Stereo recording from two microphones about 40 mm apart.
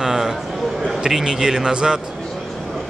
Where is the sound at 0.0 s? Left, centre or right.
Centre.